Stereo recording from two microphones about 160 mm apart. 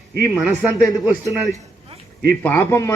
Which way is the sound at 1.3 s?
20° left (ahead or behind).